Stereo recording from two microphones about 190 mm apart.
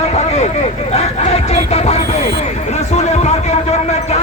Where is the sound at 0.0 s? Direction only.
35° left (ahead or behind).